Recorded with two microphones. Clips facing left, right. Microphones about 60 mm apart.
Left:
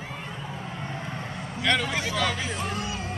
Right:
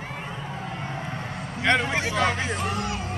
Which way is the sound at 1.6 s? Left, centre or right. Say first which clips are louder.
Right 3 dB; right.